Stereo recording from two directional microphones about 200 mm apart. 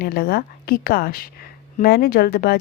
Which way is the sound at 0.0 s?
50° left (ahead or behind).